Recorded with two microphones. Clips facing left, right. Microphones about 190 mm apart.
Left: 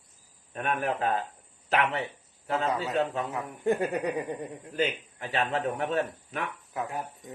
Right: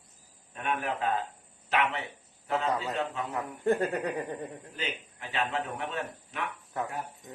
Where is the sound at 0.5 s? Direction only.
45° left (ahead or behind).